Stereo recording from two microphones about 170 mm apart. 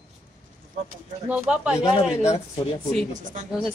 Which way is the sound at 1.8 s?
35° left (ahead or behind).